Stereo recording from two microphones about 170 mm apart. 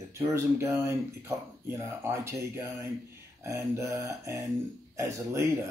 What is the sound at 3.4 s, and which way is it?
Mantra, 20° right (ahead or behind).